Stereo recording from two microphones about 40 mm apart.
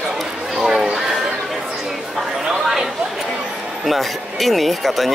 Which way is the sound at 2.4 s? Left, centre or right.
Centre.